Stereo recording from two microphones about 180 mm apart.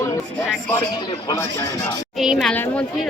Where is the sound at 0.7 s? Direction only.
25° left (ahead or behind).